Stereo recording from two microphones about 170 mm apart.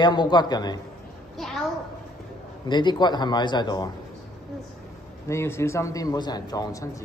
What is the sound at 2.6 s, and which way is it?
A man's voice, 25° left (ahead or behind).